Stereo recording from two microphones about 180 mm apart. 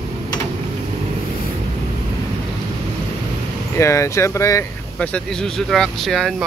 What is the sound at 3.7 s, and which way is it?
Speech, 15° left (ahead or behind).